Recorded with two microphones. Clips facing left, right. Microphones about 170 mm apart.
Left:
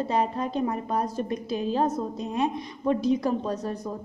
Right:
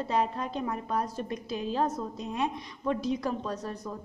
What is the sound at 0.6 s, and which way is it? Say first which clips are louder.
Speech: left 4 dB; 25° left (ahead or behind).